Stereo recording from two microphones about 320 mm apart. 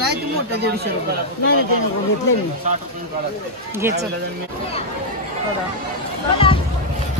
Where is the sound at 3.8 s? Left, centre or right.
Centre.